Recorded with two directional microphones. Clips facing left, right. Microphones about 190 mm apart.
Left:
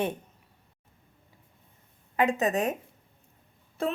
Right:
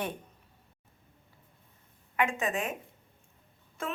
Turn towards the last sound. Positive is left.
turn(degrees=35)  # may be behind; listen again after turning